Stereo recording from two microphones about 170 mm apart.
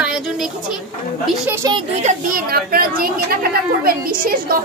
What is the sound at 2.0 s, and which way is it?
Speech, 50° right (ahead or behind).